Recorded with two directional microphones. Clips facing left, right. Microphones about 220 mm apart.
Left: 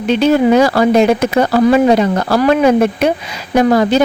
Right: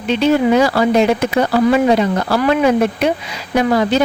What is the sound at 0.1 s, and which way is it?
Speech, 45° left (ahead or behind).